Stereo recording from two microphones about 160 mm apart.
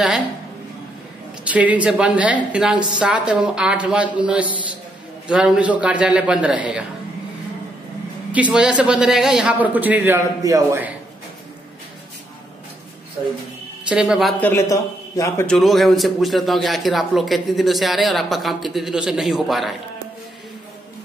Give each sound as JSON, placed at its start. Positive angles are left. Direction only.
{"t": 1.5, "sound": "a man's voice", "side_deg": -10}
{"t": 8.3, "sound": "a man's voice", "side_deg": -10}
{"t": 13.8, "sound": "a man's voice", "side_deg": -5}
{"t": 14.4, "sound": "a man's voice", "side_deg": 15}
{"t": 15.4, "sound": "a man's voice", "side_deg": 5}